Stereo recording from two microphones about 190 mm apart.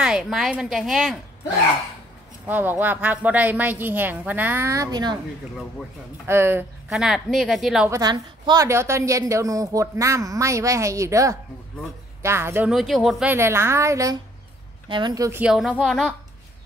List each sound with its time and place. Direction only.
0.0 s a woman's voice: 5° right (ahead or behind)
2.4 s a woman's voice: 10° right (ahead or behind)
6.2 s a woman's voice: 15° right (ahead or behind)
6.9 s a woman's voice: centre (ahead or behind)
7.9 s a woman's voice: 20° right (ahead or behind)
15.4 s a woman's voice: centre (ahead or behind)